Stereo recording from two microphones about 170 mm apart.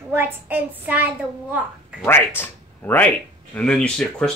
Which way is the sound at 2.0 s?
15° left (ahead or behind).